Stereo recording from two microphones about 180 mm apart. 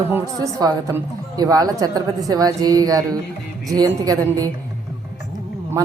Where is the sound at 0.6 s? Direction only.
20° right (ahead or behind).